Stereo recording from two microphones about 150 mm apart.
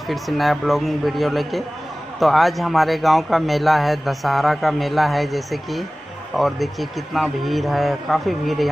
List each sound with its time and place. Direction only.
0.1 s a man's voice: centre (ahead or behind)